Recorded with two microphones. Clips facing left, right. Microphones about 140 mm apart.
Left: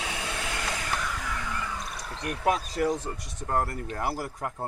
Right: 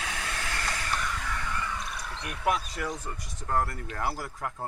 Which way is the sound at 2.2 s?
40° left (ahead or behind).